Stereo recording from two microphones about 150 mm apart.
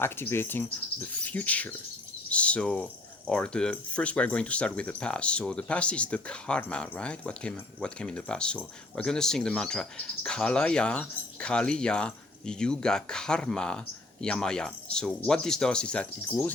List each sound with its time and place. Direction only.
0.0 s speech: 15° left (ahead or behind)
9.0 s cricket: 5° left (ahead or behind)